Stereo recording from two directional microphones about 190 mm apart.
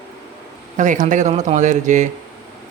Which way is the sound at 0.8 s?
40° right (ahead or behind).